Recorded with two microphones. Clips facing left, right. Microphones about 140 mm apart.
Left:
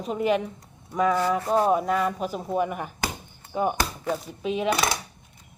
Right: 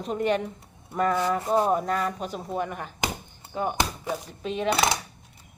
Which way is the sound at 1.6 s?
5° left (ahead or behind).